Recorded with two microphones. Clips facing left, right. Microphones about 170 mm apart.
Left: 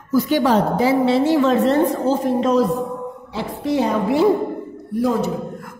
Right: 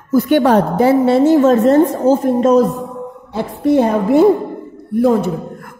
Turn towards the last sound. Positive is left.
turn(degrees=-55)  # may be behind; listen again after turning